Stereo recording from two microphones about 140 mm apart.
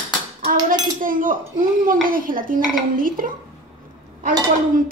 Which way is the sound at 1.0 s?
80° right.